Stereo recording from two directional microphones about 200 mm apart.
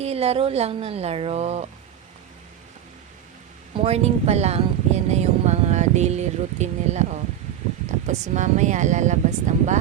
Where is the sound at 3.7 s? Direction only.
30° right (ahead or behind).